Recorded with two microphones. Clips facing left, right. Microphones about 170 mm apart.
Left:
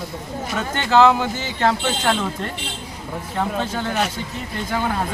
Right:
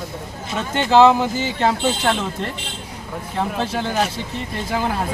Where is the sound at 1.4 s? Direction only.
5° right (ahead or behind).